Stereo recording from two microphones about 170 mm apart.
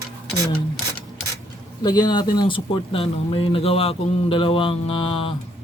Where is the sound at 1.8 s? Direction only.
25° left (ahead or behind).